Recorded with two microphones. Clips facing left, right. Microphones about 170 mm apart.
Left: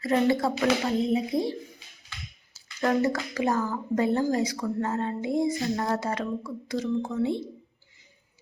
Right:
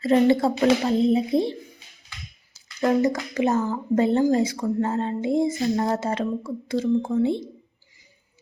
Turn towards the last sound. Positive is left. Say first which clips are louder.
# right 5 dB
turn(degrees=-25)  # may be behind; listen again after turning